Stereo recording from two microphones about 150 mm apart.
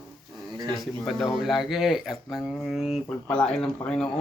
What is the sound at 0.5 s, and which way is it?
Speech, 30° right (ahead or behind).